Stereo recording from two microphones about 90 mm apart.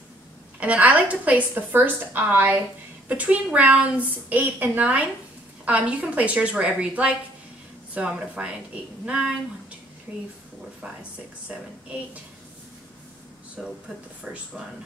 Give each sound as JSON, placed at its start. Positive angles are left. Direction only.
{"t": 0.6, "sound": "a woman's voice", "side_deg": -15}
{"t": 11.4, "sound": "a woman's voice", "side_deg": -15}
{"t": 13.6, "sound": "a woman's voice", "side_deg": -10}